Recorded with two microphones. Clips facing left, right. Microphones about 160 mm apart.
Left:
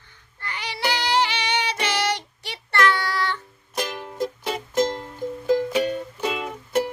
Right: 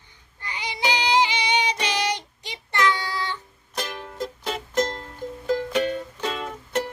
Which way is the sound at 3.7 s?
10° left (ahead or behind).